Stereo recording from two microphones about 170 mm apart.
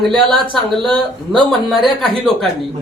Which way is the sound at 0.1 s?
25° right (ahead or behind).